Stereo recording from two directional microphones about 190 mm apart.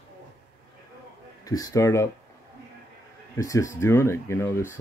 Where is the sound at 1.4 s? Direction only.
20° left (ahead or behind).